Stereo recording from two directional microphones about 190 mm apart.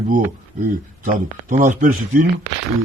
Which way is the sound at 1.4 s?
45° right (ahead or behind).